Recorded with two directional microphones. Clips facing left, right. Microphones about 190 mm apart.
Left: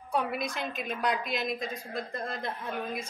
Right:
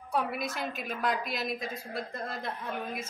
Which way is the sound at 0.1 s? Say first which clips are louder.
Left 1 dB; 5° right (ahead or behind).